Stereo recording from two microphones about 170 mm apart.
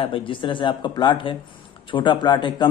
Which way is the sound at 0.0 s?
30° left (ahead or behind).